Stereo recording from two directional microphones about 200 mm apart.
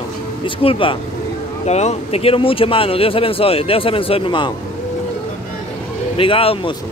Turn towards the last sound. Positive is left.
turn(degrees=25)  # may be behind; listen again after turning